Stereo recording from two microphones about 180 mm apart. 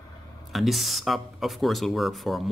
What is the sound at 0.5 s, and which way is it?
Speech, centre (ahead or behind).